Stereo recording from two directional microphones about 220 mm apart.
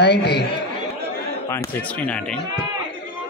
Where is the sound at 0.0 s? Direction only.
50° left (ahead or behind).